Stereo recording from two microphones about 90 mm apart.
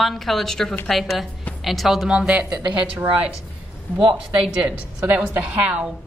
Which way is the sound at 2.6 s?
65° right (ahead or behind).